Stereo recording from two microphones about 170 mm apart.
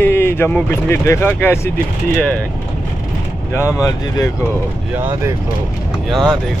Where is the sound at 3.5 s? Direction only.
15° left (ahead or behind).